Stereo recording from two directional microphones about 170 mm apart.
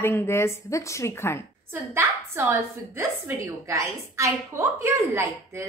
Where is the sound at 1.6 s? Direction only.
15° right (ahead or behind).